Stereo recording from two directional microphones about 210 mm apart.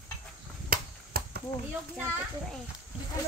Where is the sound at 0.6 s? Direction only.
45° right (ahead or behind).